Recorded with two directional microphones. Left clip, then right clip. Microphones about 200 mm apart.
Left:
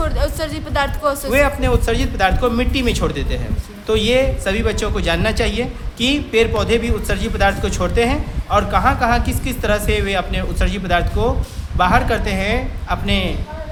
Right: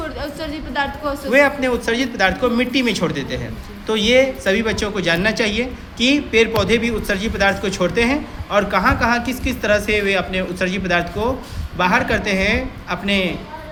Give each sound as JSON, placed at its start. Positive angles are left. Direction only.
{"t": 0.0, "sound": "a woman's voice", "side_deg": 30}
{"t": 1.3, "sound": "speech", "side_deg": 10}